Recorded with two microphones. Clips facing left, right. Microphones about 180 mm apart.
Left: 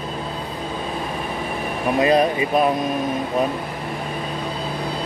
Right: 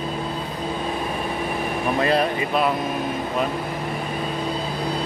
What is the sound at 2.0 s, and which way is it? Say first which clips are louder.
Speech: left 5 dB; 15° left (ahead or behind).